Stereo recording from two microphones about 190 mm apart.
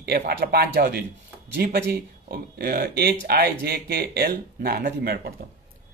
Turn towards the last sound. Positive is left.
turn(degrees=-50)  # may be behind; listen again after turning